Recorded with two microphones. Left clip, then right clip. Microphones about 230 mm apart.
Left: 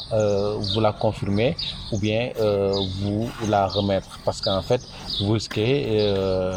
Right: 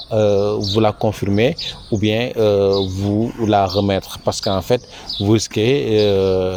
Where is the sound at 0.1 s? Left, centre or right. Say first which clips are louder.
Right 6 dB; right.